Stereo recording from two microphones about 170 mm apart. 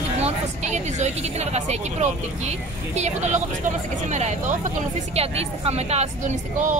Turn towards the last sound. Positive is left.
turn(degrees=-45)  # may be behind; listen again after turning